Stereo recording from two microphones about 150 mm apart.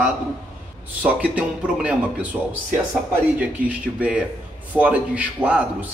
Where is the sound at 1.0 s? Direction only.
10° right (ahead or behind).